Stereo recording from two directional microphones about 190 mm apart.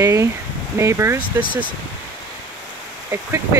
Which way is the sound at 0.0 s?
15° right (ahead or behind).